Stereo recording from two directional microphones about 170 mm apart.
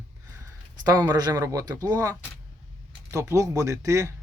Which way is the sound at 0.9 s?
20° right (ahead or behind).